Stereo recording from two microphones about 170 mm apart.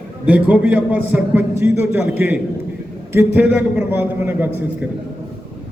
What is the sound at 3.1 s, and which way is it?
A man's voice, 15° right (ahead or behind).